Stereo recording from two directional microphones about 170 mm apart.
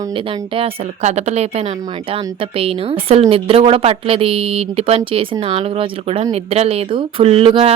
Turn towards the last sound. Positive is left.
turn(degrees=-30)  # may be behind; listen again after turning